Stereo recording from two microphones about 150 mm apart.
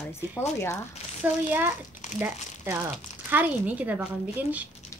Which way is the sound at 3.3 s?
10° right (ahead or behind).